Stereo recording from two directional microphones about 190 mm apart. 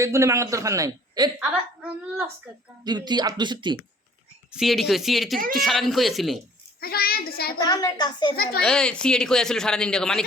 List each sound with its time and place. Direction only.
0.0 s a man's voice: 15° right (ahead or behind)
1.4 s a man's voice: 5° right (ahead or behind)
2.8 s speech: 20° right (ahead or behind)
4.5 s speech: centre (ahead or behind)
6.7 s a child's voice: 55° left (ahead or behind)
7.6 s a child's voice: 20° left (ahead or behind)
8.6 s speech: 5° left (ahead or behind)